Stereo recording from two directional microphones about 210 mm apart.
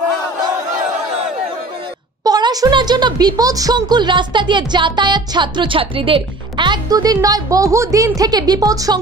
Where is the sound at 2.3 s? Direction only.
20° right (ahead or behind).